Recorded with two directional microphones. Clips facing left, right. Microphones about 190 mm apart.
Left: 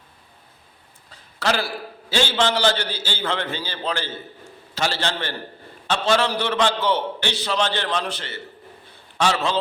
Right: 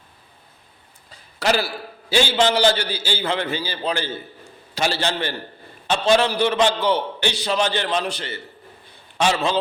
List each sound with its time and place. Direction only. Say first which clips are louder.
1.4 s a man's voice: right 2 dB; 10° right (ahead or behind)